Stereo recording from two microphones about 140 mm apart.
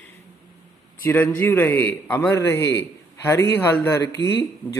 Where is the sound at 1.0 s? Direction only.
15° left (ahead or behind).